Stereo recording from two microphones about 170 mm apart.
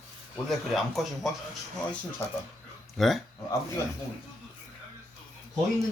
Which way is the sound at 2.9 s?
Centre (ahead or behind).